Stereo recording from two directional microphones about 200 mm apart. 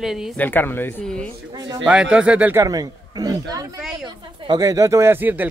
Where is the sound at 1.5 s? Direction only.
20° right (ahead or behind).